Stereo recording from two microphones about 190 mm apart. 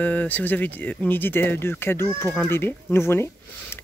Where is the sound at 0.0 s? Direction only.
10° left (ahead or behind).